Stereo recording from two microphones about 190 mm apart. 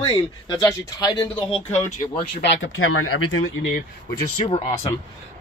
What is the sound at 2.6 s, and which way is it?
Speech, 90° left.